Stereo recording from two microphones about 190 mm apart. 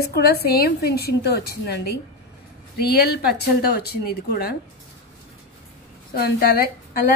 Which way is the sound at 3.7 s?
55° left (ahead or behind).